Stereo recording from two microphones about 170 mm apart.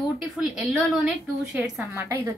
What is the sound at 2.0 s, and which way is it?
Speech, 15° right (ahead or behind).